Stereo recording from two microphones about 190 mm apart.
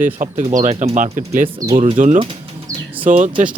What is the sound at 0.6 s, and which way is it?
Speech, 35° right (ahead or behind).